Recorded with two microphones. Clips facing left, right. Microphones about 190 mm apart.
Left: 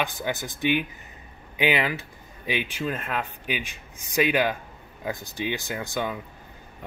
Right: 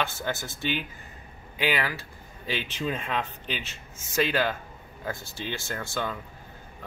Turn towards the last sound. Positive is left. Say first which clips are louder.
# left 3 dB
turn(degrees=15)  # may be behind; listen again after turning